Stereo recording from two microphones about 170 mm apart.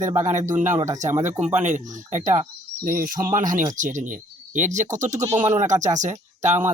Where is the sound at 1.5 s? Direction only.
45° right (ahead or behind).